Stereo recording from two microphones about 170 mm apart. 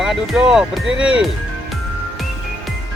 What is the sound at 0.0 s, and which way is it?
Speech, 5° right (ahead or behind).